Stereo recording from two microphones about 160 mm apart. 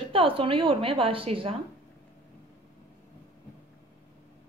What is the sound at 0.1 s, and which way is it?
A woman's voice, 35° right (ahead or behind).